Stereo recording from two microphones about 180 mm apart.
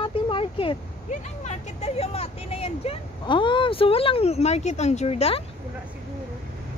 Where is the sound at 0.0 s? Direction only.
30° left (ahead or behind).